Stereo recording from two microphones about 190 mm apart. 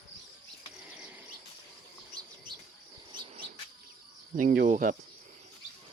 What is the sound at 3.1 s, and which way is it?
Cricket, 25° right (ahead or behind).